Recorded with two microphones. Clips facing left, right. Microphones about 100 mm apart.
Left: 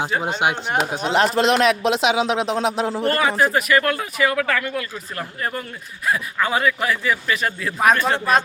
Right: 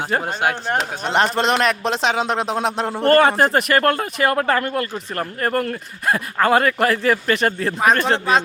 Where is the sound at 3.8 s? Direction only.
45° right (ahead or behind).